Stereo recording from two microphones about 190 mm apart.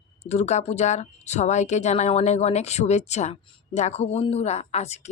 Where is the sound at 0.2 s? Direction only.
35° left (ahead or behind).